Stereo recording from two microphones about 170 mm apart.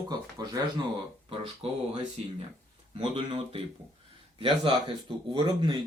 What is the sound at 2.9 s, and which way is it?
Speech, 30° right (ahead or behind).